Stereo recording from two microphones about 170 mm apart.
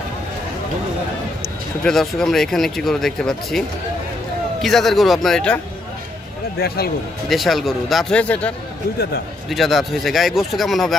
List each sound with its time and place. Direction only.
1.9 s speech: centre (ahead or behind)
6.6 s speech: 65° left (ahead or behind)
7.2 s speech: centre (ahead or behind)